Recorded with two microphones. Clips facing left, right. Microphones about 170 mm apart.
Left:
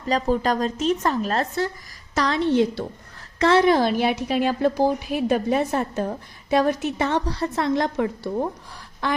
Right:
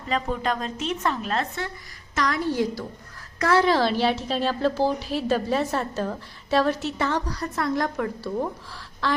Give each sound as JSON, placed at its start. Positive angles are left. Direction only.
{"t": 0.1, "sound": "a woman's voice", "side_deg": 40}
{"t": 2.1, "sound": "a woman's voice", "side_deg": 25}